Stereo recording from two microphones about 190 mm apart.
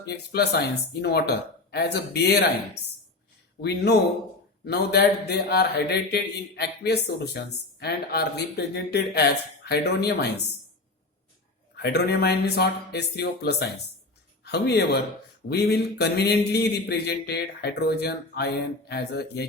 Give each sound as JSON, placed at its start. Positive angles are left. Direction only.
{"t": 0.0, "sound": "speech", "side_deg": 60}
{"t": 3.6, "sound": "speech", "side_deg": 60}
{"t": 11.8, "sound": "speech", "side_deg": 60}